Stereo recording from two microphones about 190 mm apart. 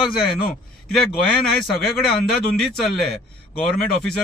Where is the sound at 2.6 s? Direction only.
Centre (ahead or behind).